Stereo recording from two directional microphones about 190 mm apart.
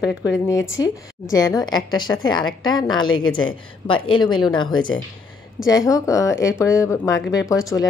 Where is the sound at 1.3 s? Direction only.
20° left (ahead or behind).